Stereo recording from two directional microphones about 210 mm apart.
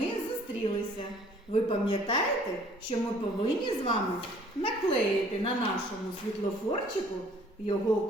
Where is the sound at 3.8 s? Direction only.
25° left (ahead or behind).